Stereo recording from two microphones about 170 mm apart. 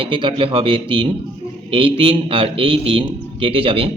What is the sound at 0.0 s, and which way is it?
A man's voice, 30° right (ahead or behind).